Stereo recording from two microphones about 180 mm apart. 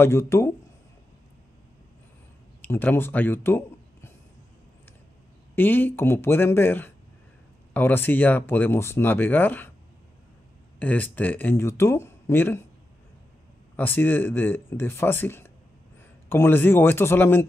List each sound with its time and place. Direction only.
0.0 s speech: 15° left (ahead or behind)
2.6 s speech: 10° left (ahead or behind)
5.6 s speech: 10° left (ahead or behind)
10.8 s speech: 10° left (ahead or behind)
13.7 s speech: 10° left (ahead or behind)